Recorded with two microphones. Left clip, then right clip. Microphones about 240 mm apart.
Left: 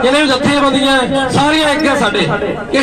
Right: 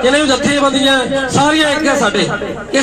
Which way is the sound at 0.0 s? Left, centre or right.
Right.